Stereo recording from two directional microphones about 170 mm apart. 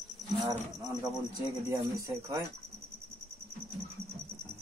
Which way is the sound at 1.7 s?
20° right (ahead or behind).